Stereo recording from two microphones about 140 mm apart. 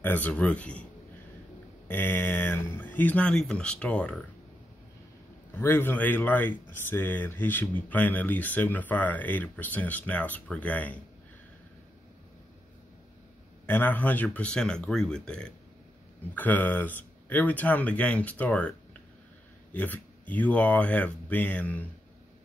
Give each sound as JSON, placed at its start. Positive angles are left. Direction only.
{"t": 0.0, "sound": "speech", "side_deg": 10}
{"t": 1.9, "sound": "speech", "side_deg": 15}
{"t": 5.5, "sound": "speech", "side_deg": 15}
{"t": 13.7, "sound": "speech", "side_deg": 15}